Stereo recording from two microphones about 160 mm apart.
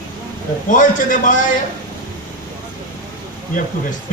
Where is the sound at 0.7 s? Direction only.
55° left (ahead or behind).